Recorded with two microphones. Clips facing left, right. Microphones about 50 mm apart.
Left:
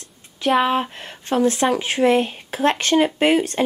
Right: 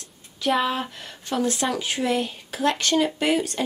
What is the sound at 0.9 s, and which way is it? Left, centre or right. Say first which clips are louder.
A woman's voice: left 6 dB; left.